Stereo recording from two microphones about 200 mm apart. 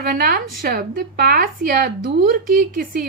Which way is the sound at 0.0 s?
45° right (ahead or behind).